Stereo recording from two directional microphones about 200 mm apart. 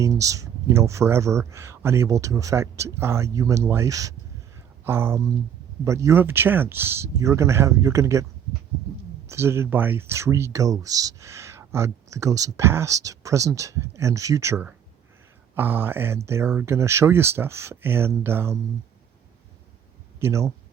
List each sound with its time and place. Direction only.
0.0 s speech: 15° right (ahead or behind)
20.1 s speech: 15° right (ahead or behind)